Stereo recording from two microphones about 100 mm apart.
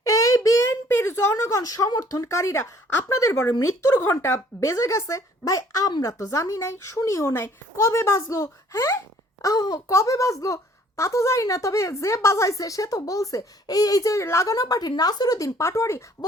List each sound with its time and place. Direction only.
0.0 s a sound: 35° left (ahead or behind)
0.9 s speech: 20° left (ahead or behind)
3.5 s speech: 35° left (ahead or behind)
4.0 s speech: 25° left (ahead or behind)